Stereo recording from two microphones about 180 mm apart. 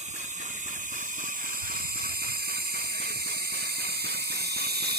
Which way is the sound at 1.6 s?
60° right (ahead or behind).